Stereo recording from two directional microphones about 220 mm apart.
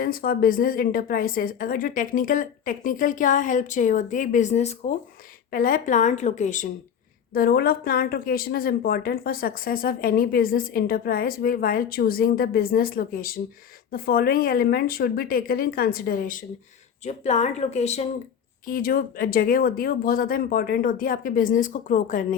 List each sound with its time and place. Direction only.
0.0 s a woman's voice: 40° left (ahead or behind)
18.6 s speech: 40° left (ahead or behind)